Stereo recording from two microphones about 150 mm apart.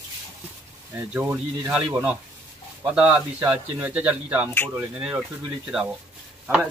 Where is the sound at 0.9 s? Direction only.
10° right (ahead or behind).